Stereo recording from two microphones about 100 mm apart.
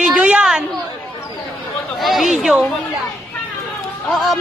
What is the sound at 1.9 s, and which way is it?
Speech, centre (ahead or behind).